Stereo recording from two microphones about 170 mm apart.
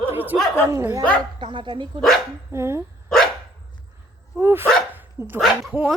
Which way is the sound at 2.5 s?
15° right (ahead or behind).